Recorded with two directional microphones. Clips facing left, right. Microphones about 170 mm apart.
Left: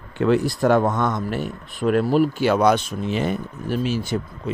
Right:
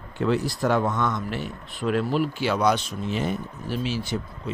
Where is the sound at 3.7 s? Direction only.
50° left (ahead or behind).